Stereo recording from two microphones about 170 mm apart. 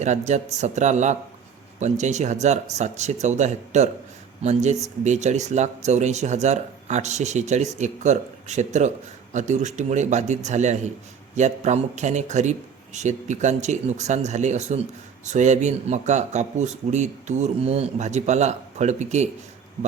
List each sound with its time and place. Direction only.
0.0 s a man's voice: 45° right (ahead or behind)